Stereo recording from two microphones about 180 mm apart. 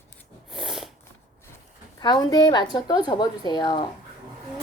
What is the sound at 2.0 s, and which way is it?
A woman's voice, 20° left (ahead or behind).